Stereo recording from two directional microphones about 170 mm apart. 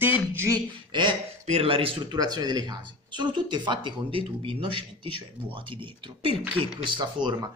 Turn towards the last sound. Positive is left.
turn(degrees=-30)  # may be behind; listen again after turning